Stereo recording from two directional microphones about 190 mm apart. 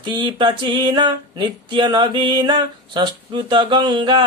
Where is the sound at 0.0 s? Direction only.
25° right (ahead or behind).